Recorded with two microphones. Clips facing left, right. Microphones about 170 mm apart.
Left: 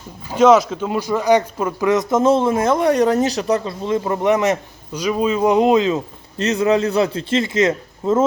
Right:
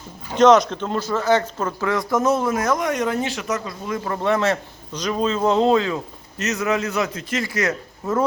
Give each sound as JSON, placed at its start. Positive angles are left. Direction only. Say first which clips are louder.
{"t": 0.3, "sound": "speech", "louder": "left 1 dB", "side_deg": 5}
{"t": 6.4, "sound": "a man's voice", "louder": "left 6 dB", "side_deg": 30}